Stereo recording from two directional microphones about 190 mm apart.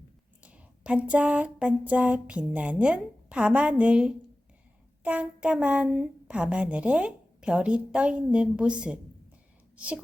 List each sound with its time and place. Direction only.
0.4 s speech: 5° right (ahead or behind)